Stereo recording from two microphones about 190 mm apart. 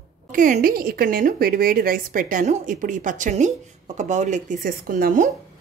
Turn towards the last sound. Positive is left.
turn(degrees=-45)  # may be behind; listen again after turning